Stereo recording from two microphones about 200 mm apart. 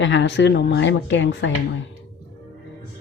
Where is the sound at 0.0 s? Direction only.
65° left (ahead or behind).